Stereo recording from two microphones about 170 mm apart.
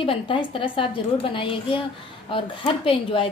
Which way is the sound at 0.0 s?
30° left (ahead or behind).